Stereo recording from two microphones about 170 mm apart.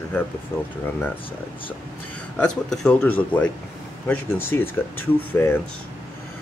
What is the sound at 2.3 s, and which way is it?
A man's voice, 5° left (ahead or behind).